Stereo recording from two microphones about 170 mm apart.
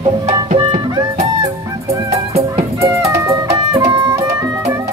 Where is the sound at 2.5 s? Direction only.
20° right (ahead or behind).